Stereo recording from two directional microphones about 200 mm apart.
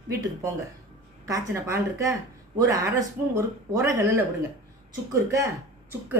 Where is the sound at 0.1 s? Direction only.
15° right (ahead or behind).